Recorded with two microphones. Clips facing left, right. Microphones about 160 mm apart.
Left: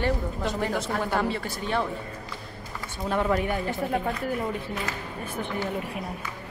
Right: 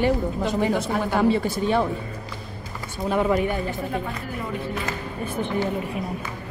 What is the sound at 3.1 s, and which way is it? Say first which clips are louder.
Speech: right 4 dB; 5° right (ahead or behind).